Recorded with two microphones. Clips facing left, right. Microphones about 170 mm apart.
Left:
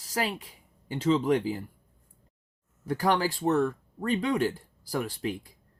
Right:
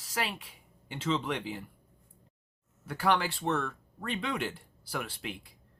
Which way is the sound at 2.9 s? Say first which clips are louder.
Left 3 dB; 40° left (ahead or behind).